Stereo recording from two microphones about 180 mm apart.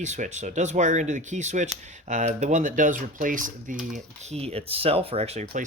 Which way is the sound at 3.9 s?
35° right (ahead or behind).